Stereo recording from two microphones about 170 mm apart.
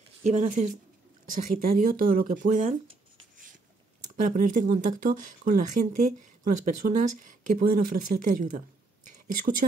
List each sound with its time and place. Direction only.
0.2 s speech: 45° right (ahead or behind)
4.2 s speech: 45° right (ahead or behind)